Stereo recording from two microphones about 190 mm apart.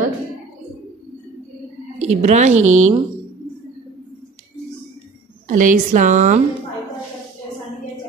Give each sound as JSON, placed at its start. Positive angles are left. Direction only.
{"t": 2.0, "sound": "a woman's voice", "side_deg": -35}
{"t": 5.5, "sound": "a woman's voice", "side_deg": -40}